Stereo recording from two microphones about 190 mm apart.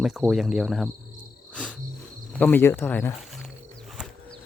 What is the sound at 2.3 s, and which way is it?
Speech, 10° left (ahead or behind).